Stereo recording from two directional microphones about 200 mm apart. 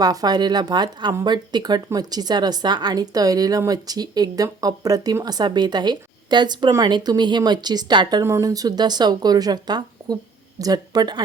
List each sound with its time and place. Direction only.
0.0 s speech: 20° right (ahead or behind)